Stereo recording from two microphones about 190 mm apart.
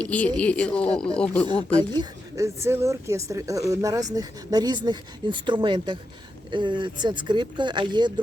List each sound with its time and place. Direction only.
0.0 s speech: 5° left (ahead or behind)
1.8 s a woman's voice: 20° right (ahead or behind)